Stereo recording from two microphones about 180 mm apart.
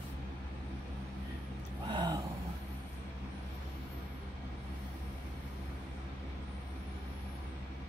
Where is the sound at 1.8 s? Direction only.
25° right (ahead or behind).